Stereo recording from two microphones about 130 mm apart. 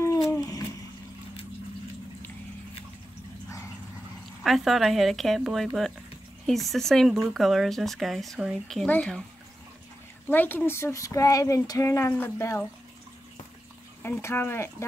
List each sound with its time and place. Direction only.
0.3 s a sound: 25° left (ahead or behind)
4.4 s speech: centre (ahead or behind)
10.2 s speech: 15° left (ahead or behind)
14.0 s speech: 15° left (ahead or behind)